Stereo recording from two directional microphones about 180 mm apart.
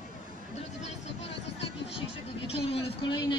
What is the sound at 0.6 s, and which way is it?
Vehicle, 35° left (ahead or behind).